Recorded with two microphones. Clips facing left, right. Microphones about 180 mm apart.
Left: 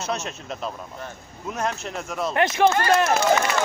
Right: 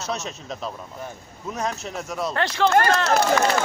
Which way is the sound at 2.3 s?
20° left (ahead or behind).